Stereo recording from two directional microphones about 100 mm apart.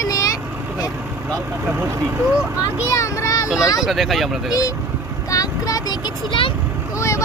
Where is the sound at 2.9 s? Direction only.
30° left (ahead or behind).